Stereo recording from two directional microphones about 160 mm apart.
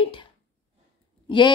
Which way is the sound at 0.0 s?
30° left (ahead or behind).